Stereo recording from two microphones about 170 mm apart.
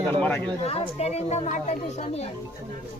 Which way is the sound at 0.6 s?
40° left (ahead or behind).